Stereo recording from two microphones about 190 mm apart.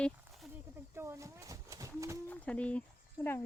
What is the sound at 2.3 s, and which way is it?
Speech, 5° left (ahead or behind).